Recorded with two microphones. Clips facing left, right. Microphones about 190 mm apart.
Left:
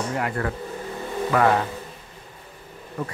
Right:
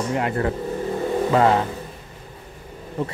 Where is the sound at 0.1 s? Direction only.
25° right (ahead or behind).